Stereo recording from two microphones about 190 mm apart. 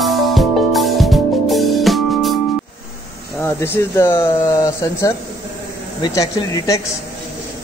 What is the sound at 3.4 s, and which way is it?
A man's voice, 15° left (ahead or behind).